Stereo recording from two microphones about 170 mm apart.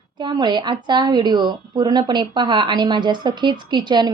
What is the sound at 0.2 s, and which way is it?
A woman's voice, 25° right (ahead or behind).